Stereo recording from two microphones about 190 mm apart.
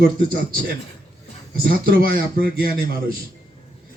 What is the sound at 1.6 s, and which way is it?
Speech, 50° right (ahead or behind).